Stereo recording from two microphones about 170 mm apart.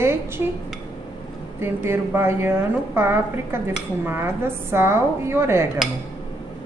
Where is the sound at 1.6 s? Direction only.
15° right (ahead or behind).